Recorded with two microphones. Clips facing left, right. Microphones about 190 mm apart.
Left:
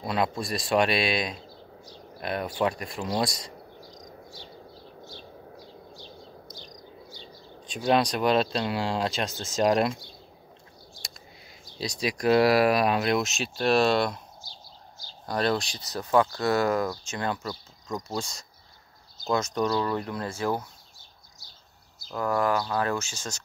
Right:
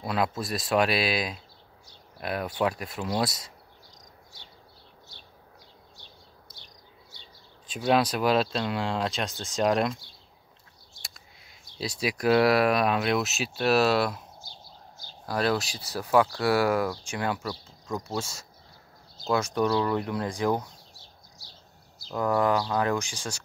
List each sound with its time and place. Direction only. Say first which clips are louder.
0.0 s speech: left 1 dB; centre (ahead or behind)
7.6 s speech: even; 5° right (ahead or behind)
11.8 s speech: even; 5° right (ahead or behind)
14.4 s a sound: even; 55° right (ahead or behind)
15.2 s speech: even; 5° right (ahead or behind)
22.1 s speech: right 1 dB; 10° right (ahead or behind)